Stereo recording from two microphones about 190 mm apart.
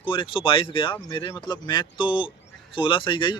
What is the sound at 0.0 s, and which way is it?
Speech, 25° left (ahead or behind).